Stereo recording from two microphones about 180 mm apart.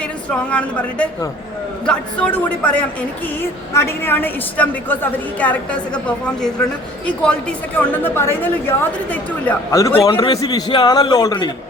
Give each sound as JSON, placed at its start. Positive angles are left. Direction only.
{"t": 0.5, "sound": "a woman's voice", "side_deg": 5}
{"t": 7.8, "sound": "a woman's voice", "side_deg": 10}